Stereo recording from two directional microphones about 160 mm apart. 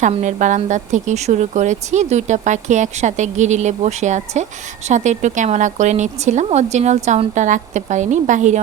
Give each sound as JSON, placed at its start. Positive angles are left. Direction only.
{"t": 0.0, "sound": "speech", "side_deg": -45}